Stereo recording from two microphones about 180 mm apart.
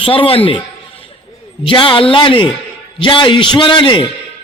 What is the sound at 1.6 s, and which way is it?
A man's voice, 30° left (ahead or behind).